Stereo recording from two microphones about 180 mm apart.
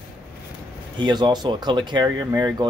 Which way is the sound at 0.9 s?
25° right (ahead or behind).